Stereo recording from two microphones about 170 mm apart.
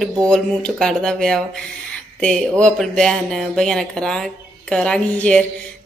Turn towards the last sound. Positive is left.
turn(degrees=5)  # may be behind; listen again after turning